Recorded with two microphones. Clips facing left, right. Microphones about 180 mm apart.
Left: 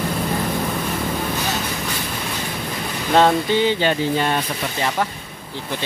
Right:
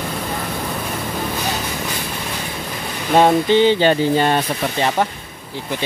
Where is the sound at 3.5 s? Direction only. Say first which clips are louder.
Right 5 dB; 30° right (ahead or behind).